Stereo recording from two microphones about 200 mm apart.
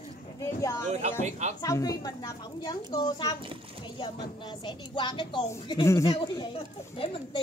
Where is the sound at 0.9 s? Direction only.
35° right (ahead or behind).